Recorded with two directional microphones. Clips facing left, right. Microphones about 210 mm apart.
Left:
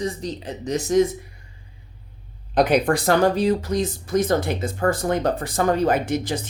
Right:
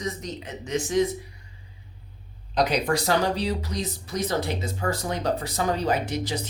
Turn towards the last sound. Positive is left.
turn(degrees=50)  # may be behind; listen again after turning